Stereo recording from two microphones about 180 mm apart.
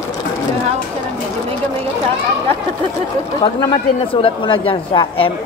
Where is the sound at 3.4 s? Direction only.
30° left (ahead or behind).